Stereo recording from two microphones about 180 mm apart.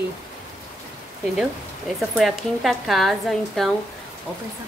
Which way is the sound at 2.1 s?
Centre (ahead or behind).